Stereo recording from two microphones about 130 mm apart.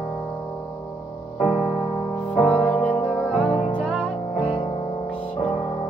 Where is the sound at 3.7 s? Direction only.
10° left (ahead or behind).